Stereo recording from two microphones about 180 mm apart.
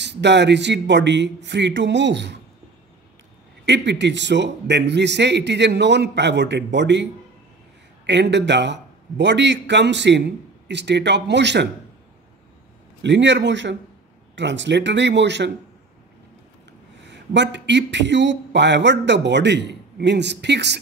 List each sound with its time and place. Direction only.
0.0 s speech: 75° right (ahead or behind)
3.6 s speech: 75° right (ahead or behind)
8.1 s speech: 75° right (ahead or behind)
13.0 s a man's voice: 80° right
17.1 s speech: 75° right (ahead or behind)